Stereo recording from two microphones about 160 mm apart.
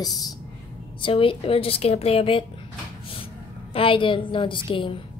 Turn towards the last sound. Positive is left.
turn(degrees=30)  # may be behind; listen again after turning